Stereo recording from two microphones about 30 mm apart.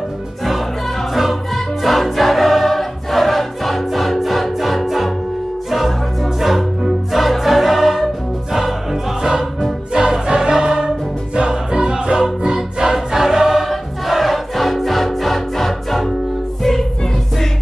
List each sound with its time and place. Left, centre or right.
1.8 s music: centre
2.1 s choir: centre
6.4 s music: centre
9.2 s music: centre
10.2 s music: right
11.3 s choir: right
12.2 s music: right
12.9 s choir: centre
13.6 s music: centre